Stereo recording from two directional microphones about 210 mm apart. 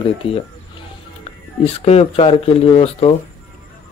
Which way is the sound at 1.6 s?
30° left (ahead or behind).